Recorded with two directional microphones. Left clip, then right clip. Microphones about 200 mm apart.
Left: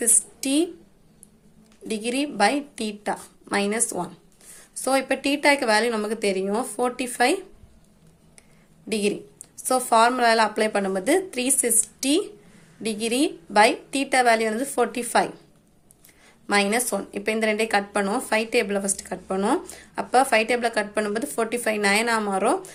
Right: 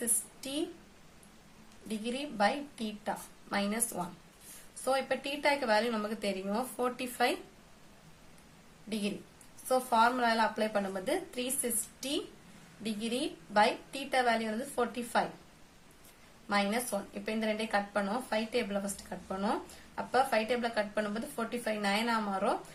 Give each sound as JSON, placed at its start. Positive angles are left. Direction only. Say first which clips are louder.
{"t": 1.9, "sound": "a woman's voice", "louder": "left 11 dB", "side_deg": 30}
{"t": 8.9, "sound": "a woman's voice", "louder": "left 13 dB", "side_deg": 30}
{"t": 16.5, "sound": "a woman's voice", "louder": "left 10 dB", "side_deg": 30}